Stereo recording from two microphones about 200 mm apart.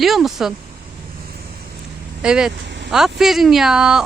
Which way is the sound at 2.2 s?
5° right (ahead or behind).